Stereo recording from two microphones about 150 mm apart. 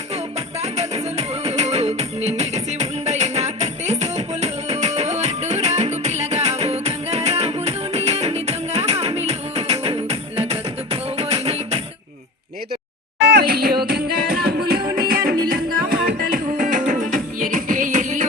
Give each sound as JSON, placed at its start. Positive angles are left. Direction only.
{"t": 0.6, "sound": "music", "side_deg": -45}
{"t": 13.4, "sound": "music", "side_deg": -90}
{"t": 14.9, "sound": "music", "side_deg": -80}